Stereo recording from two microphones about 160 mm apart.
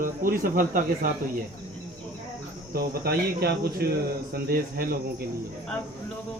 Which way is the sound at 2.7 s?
70° right (ahead or behind).